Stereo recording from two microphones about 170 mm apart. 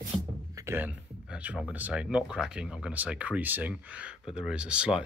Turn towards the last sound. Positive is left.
turn(degrees=-5)  # may be behind; listen again after turning